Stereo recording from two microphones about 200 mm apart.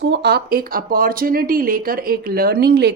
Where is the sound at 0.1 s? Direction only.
55° right (ahead or behind).